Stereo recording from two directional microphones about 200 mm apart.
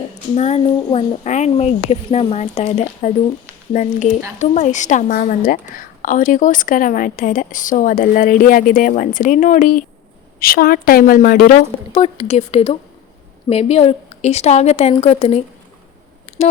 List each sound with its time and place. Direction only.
0.3 s a woman's voice: 30° left (ahead or behind)
11.9 s a woman's voice: 30° left (ahead or behind)